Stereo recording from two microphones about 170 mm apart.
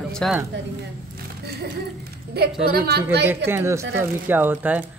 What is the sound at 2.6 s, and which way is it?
Speech, 65° right (ahead or behind).